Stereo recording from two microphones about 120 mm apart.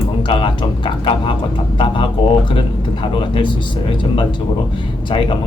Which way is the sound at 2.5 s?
45° left (ahead or behind).